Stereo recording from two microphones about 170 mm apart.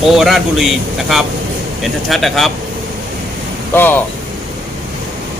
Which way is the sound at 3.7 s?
10° left (ahead or behind).